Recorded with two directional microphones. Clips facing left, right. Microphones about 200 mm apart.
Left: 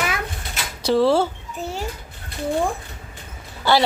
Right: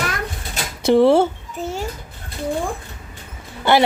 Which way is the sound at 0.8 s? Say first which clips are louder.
Right 4 dB; 20° right (ahead or behind).